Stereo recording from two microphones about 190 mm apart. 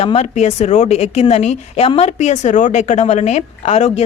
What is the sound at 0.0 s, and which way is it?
A woman's voice, 30° left (ahead or behind).